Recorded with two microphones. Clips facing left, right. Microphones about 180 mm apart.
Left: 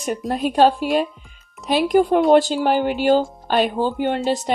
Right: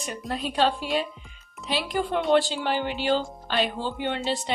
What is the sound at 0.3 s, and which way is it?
Speech, 45° left (ahead or behind).